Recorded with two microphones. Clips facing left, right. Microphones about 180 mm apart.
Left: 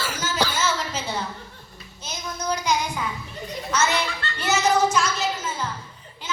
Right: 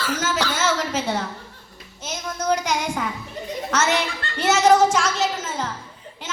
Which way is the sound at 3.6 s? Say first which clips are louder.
Right 1 dB; 85° right.